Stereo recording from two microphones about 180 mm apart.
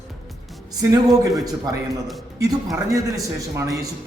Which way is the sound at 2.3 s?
20° right (ahead or behind).